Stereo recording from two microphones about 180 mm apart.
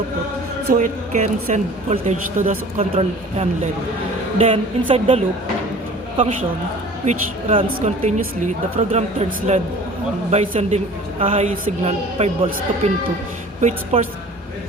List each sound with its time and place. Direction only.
0.8 s speech: 45° right (ahead or behind)
7.0 s speech: 40° right (ahead or behind)